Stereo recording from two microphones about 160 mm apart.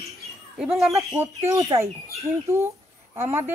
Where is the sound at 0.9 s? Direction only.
20° right (ahead or behind).